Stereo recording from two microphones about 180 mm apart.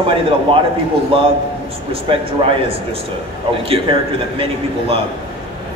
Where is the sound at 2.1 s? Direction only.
30° right (ahead or behind).